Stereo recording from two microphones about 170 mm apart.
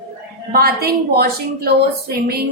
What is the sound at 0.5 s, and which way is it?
A woman's voice, 65° right (ahead or behind).